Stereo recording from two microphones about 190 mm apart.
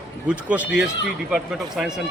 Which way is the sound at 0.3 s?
5° right (ahead or behind).